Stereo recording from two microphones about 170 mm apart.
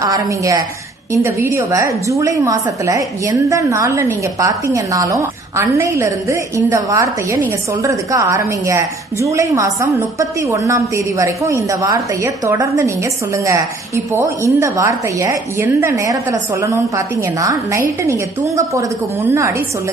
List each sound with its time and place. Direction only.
0.0 s a woman's voice: 20° right (ahead or behind)